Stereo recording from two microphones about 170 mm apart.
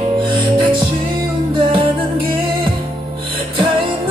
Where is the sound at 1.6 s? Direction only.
30° right (ahead or behind).